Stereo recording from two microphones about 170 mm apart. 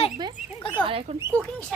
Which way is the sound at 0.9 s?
35° right (ahead or behind).